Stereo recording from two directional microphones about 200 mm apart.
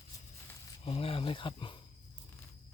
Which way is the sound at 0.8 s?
30° left (ahead or behind).